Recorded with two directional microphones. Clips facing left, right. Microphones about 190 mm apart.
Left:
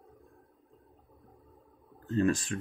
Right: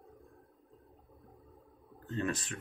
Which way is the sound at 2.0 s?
35° left (ahead or behind).